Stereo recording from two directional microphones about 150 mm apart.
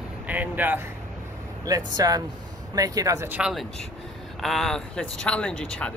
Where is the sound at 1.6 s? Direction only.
25° right (ahead or behind).